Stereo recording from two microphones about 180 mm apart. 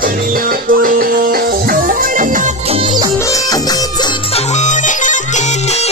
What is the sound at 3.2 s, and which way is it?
Music, 20° left (ahead or behind).